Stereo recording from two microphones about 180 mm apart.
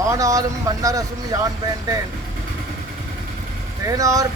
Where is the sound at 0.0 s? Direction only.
20° right (ahead or behind).